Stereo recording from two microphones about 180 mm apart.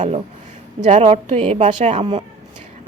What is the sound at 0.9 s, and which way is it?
A woman's voice, 40° right (ahead or behind).